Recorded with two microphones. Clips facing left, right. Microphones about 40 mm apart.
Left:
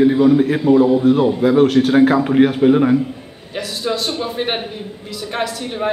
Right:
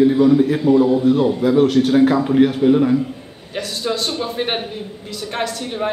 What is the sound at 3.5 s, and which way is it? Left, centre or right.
A man's voice, centre.